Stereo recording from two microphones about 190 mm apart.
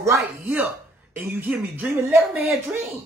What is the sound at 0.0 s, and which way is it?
Speech, 10° right (ahead or behind).